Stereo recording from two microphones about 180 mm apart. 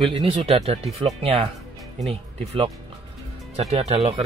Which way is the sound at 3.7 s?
35° right (ahead or behind).